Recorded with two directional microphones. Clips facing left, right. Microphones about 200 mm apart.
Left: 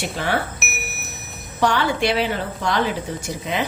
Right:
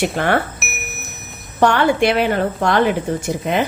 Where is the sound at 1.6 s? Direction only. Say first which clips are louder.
Right 5 dB; 55° right (ahead or behind).